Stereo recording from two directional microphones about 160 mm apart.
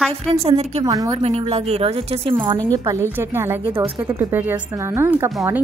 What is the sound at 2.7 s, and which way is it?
Speech, 20° right (ahead or behind).